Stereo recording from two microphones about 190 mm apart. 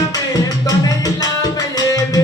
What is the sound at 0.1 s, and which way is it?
Music, 20° left (ahead or behind).